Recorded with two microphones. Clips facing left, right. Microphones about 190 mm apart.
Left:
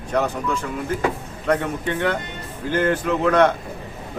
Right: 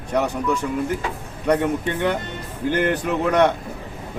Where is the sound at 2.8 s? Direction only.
15° right (ahead or behind).